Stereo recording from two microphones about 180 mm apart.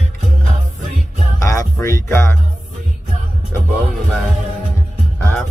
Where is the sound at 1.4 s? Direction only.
15° left (ahead or behind).